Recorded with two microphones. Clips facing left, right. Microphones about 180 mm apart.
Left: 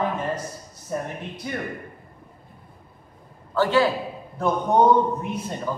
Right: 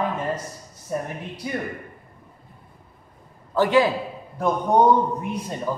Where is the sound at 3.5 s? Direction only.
15° right (ahead or behind).